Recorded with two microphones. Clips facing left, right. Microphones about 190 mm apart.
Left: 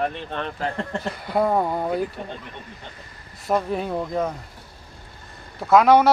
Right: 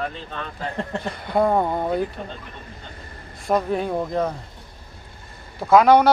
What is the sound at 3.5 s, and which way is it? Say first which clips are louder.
Speech: right 2 dB; centre (ahead or behind).